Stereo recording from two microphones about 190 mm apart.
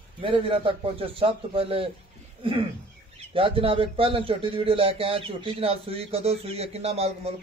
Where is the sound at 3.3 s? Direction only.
30° right (ahead or behind).